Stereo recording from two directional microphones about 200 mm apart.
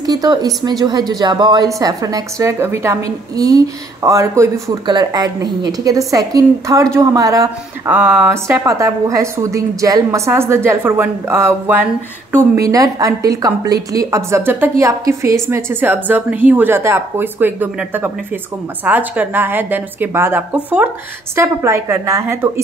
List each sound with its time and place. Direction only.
0.0 s a woman's voice: 20° right (ahead or behind)